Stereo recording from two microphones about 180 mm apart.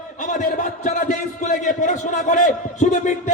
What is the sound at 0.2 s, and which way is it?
A man's voice, 45° left (ahead or behind).